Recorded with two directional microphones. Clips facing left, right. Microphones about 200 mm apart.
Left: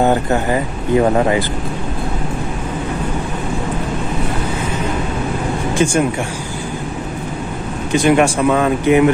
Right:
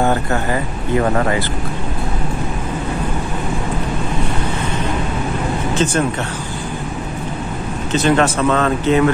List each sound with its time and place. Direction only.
0.0 s speech: 15° left (ahead or behind)
5.8 s speech: 10° left (ahead or behind)
7.9 s speech: 15° left (ahead or behind)